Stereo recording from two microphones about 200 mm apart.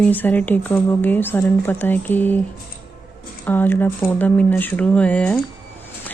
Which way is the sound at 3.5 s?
10° left (ahead or behind).